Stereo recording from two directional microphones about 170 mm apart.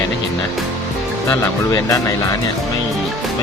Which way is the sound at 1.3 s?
20° left (ahead or behind).